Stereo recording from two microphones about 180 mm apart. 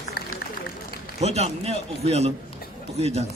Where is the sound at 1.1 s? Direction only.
35° right (ahead or behind).